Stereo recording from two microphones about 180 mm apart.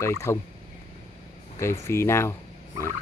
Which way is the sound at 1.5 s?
15° left (ahead or behind).